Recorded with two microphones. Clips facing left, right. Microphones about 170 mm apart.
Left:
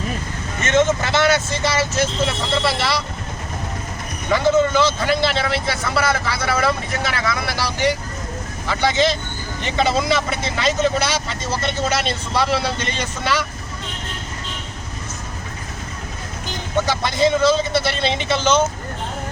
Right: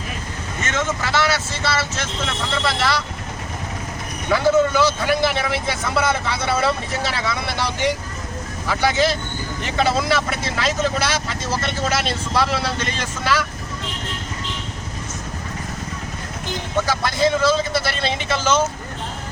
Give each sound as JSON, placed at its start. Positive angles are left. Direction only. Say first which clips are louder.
{"t": 0.6, "sound": "speech", "louder": "left 7 dB", "side_deg": 20}
{"t": 2.6, "sound": "speech", "louder": "right 2 dB", "side_deg": 0}
{"t": 4.3, "sound": "speech", "louder": "even", "side_deg": -5}
{"t": 8.6, "sound": "speech", "louder": "left 1 dB", "side_deg": -10}
{"t": 16.8, "sound": "speech", "louder": "left 1 dB", "side_deg": 0}